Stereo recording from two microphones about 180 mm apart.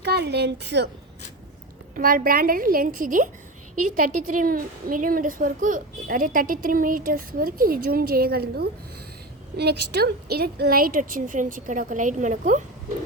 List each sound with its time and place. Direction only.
0.0 s speech: 65° right (ahead or behind)
2.0 s a woman's voice: 50° right (ahead or behind)